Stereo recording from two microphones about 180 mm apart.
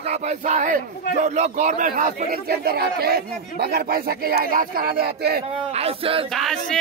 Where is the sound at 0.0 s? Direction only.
40° right (ahead or behind); by 5.4 s 60° right (ahead or behind).